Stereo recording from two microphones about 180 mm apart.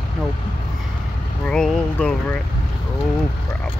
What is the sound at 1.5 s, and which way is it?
Vehicle, 5° left (ahead or behind).